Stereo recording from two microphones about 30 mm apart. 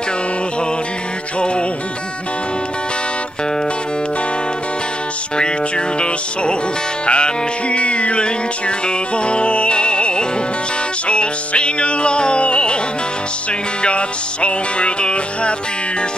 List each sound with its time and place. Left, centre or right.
7.1 s music: left
13.8 s music: left